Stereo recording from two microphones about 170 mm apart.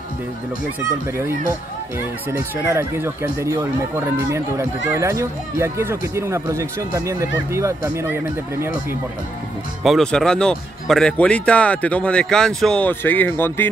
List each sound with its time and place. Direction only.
2.3 s speech: 15° right (ahead or behind)
9.8 s a man's voice: 5° left (ahead or behind)